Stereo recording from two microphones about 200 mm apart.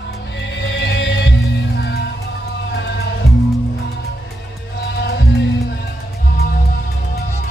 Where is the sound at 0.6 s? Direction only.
60° left (ahead or behind).